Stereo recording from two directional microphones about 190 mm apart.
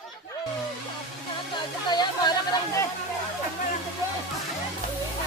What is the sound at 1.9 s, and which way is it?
Chatter, 20° left (ahead or behind).